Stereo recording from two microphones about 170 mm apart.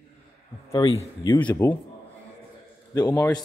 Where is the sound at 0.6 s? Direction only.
20° left (ahead or behind).